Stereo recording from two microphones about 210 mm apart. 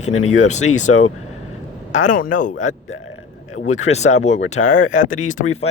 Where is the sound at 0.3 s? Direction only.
35° left (ahead or behind).